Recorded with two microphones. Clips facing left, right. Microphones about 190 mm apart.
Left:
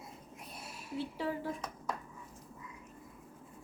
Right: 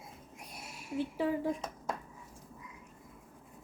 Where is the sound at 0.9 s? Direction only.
45° right (ahead or behind).